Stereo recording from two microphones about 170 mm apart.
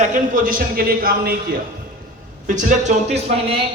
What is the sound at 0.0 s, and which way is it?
A man's voice, 50° right (ahead or behind).